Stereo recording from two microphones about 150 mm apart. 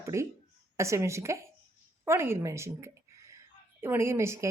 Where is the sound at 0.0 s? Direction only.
20° right (ahead or behind).